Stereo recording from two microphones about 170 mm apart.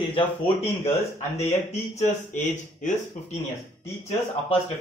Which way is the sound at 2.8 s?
45° left (ahead or behind).